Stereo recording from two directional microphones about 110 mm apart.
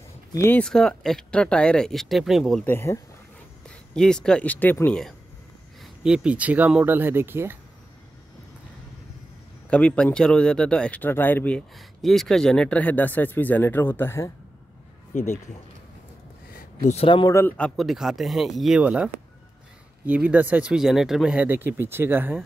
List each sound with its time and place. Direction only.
0.3 s speech: 25° left (ahead or behind)
0.6 s speech: 5° left (ahead or behind)
2.6 s speech: 20° left (ahead or behind)
3.6 s speech: 5° left (ahead or behind)
6.0 s speech: 10° right (ahead or behind)
9.7 s speech: 10° left (ahead or behind)
11.7 s speech: centre (ahead or behind); by 14.3 s 20° left (ahead or behind)
17.3 s speech: 25° left (ahead or behind)
17.6 s speech: 10° left (ahead or behind)
17.8 s speech: 5° right (ahead or behind)
18.8 s speech: 10° right (ahead or behind)
20.1 s speech: 15° right (ahead or behind)
20.7 s speech: 5° right (ahead or behind)
21.5 s speech: 20° right (ahead or behind)